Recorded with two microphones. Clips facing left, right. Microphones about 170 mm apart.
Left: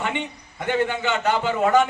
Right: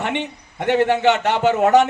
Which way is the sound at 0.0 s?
70° right (ahead or behind).